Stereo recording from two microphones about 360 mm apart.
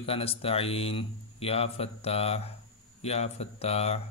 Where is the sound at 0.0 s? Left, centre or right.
Centre.